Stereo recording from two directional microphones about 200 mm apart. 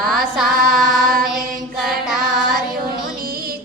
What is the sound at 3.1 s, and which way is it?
Music, 45° right (ahead or behind).